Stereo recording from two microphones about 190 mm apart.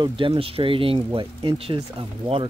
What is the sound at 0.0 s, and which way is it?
Speech, 30° right (ahead or behind).